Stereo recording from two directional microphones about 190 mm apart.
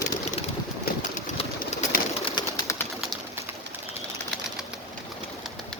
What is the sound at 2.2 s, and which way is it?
Bird, 20° left (ahead or behind).